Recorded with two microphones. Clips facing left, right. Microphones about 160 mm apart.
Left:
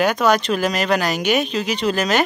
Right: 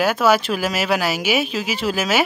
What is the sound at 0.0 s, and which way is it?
Speech, 5° right (ahead or behind).